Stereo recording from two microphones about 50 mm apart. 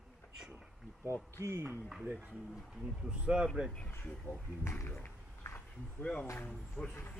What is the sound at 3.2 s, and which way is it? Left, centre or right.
Speech, centre.